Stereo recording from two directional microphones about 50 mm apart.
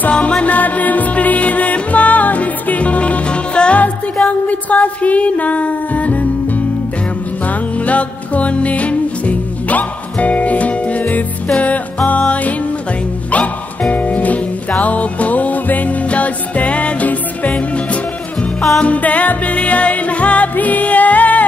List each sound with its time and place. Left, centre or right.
0.1 s music: left
7.4 s music: left
18.8 s music: left